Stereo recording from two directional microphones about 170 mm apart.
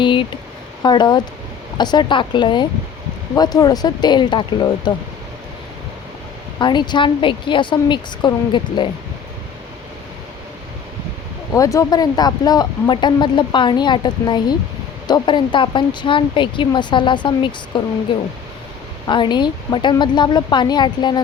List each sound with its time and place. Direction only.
0.0 s a sound: 30° left (ahead or behind)
0.8 s speech: 25° left (ahead or behind)
6.6 s speech: 25° left (ahead or behind)
11.5 s speech: 20° left (ahead or behind)
19.0 s speech: 25° left (ahead or behind)